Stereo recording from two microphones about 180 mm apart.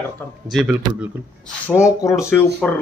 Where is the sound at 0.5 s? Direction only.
10° right (ahead or behind).